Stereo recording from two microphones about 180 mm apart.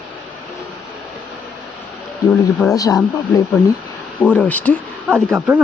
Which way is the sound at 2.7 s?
20° left (ahead or behind).